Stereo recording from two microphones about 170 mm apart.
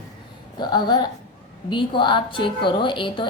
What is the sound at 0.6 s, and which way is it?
A woman's voice, 25° left (ahead or behind).